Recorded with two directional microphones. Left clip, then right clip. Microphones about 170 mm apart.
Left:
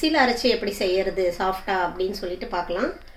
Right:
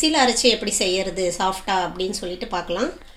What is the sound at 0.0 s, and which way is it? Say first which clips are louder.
A woman's voice: right 3 dB; 55° right (ahead or behind).